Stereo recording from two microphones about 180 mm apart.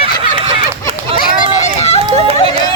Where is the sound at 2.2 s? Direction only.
30° right (ahead or behind).